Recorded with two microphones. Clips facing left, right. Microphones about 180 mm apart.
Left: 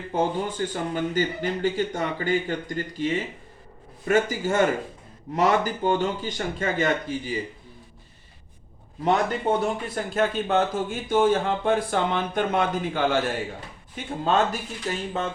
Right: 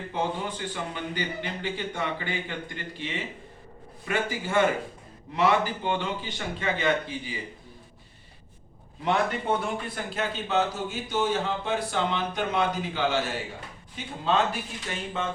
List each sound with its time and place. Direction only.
0.1 s speech: 45° left (ahead or behind)
9.6 s speech: 45° left (ahead or behind)